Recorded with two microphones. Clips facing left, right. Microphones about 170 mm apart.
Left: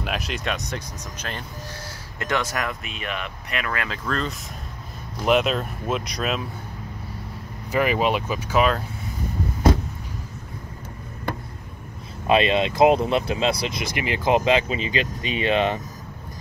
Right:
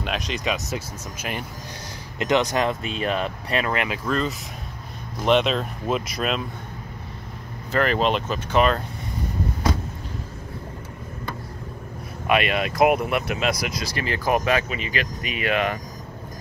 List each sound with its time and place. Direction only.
0.0 s speech: 5° left (ahead or behind)
2.1 s speech: 20° right (ahead or behind)
4.1 s speech: centre (ahead or behind)
7.7 s speech: 10° left (ahead or behind)
12.3 s speech: 25° left (ahead or behind)